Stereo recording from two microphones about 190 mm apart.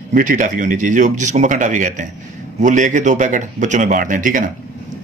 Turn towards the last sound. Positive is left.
turn(degrees=-45)  # may be behind; listen again after turning